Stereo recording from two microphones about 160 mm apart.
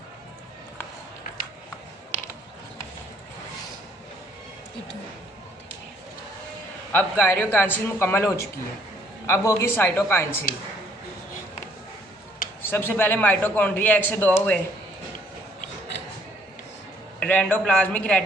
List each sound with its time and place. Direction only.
6.9 s a man's voice: 10° left (ahead or behind)
12.6 s a man's voice: 15° left (ahead or behind)
17.2 s a man's voice: 10° left (ahead or behind)